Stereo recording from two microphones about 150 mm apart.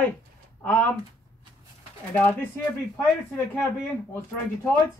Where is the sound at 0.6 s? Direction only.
10° left (ahead or behind).